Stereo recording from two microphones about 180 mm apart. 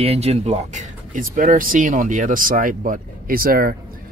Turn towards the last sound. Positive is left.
turn(degrees=-55)  # may be behind; listen again after turning